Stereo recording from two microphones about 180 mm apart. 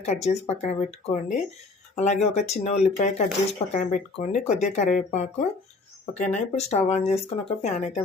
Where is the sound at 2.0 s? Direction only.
40° left (ahead or behind).